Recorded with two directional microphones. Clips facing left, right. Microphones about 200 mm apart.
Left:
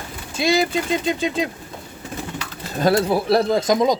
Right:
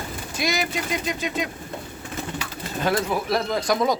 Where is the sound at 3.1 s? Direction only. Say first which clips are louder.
Left 6 dB; 35° left (ahead or behind).